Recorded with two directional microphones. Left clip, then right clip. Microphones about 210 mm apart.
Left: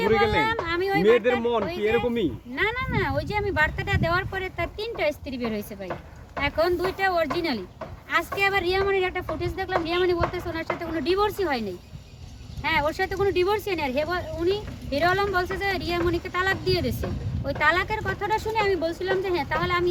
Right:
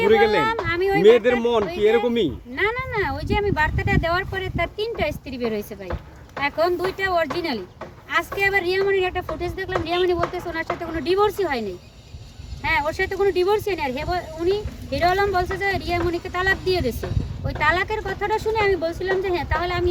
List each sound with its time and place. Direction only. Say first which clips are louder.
0.2 s speech: right 4 dB; 5° left (ahead or behind)
0.6 s a sound: right 4 dB; 5° left (ahead or behind)
1.0 s speech: right 6 dB; 50° right (ahead or behind)
2.6 s speech: right 3 dB; 5° left (ahead or behind)
12.6 s speech: right 2 dB; 5° left (ahead or behind)